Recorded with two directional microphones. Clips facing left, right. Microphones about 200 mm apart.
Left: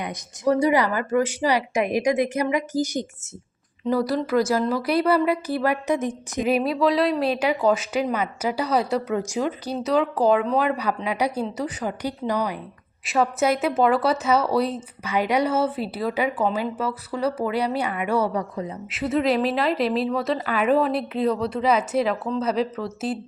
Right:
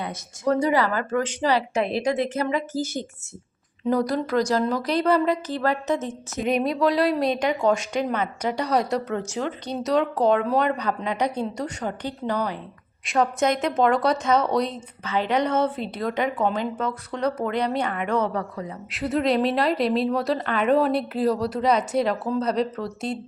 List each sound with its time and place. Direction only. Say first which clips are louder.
0.0 s speech: left 2 dB; 15° left (ahead or behind)
3.8 s speech: even; 5° left (ahead or behind)
6.4 s speech: left 1 dB; 5° left (ahead or behind)
18.5 s speech: left 3 dB; 20° left (ahead or behind)
18.9 s speech: left 1 dB; centre (ahead or behind)